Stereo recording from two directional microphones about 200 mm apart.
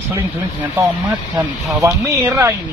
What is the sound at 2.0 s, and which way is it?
Speech, 15° right (ahead or behind).